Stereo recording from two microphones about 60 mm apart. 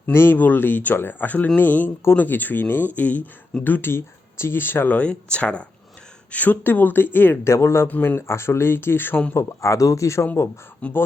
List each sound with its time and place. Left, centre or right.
0.0 s speech: left
4.9 s speech: left
7.4 s speech: left
7.9 s speech: left
8.3 s speech: left
9.3 s speech: left
10.8 s speech: left